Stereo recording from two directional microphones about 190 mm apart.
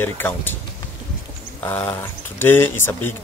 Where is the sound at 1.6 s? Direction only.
10° left (ahead or behind).